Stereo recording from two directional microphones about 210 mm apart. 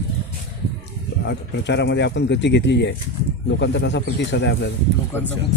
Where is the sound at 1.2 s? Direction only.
55° left (ahead or behind).